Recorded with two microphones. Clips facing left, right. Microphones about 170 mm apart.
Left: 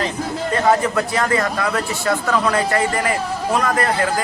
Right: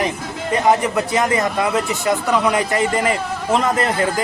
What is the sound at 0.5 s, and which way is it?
Speech, 15° right (ahead or behind).